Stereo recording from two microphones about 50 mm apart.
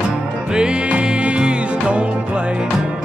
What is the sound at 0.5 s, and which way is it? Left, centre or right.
Music, centre.